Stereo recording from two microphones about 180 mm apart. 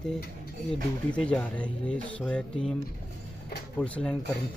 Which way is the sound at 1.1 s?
5° left (ahead or behind).